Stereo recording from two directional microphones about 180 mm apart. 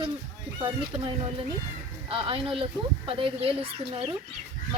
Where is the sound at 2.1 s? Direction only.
30° right (ahead or behind).